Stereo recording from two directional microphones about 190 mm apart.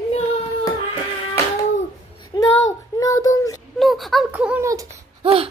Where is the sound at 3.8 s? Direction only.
Centre (ahead or behind).